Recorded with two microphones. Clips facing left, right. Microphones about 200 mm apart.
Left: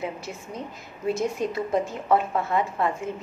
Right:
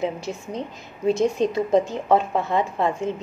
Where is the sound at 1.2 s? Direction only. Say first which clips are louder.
Right 6 dB; 20° right (ahead or behind).